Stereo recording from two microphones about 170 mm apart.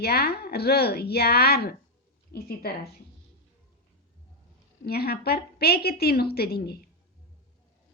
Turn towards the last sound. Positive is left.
turn(degrees=70)  # may be behind; listen again after turning